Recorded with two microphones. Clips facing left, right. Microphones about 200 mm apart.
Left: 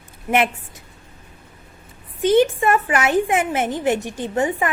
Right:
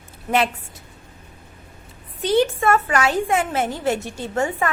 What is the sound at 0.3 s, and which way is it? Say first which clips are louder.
Speech: left 1 dB; 15° left (ahead or behind).